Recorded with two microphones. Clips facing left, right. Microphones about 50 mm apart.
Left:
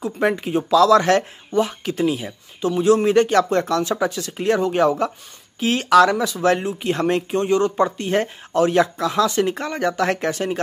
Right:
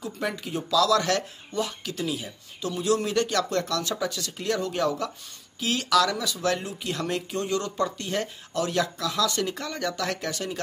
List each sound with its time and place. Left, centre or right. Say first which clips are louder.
0.0 s speech: left 10 dB; left